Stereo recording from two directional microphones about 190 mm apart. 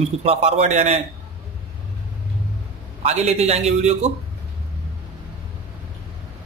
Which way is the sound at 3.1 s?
35° right (ahead or behind).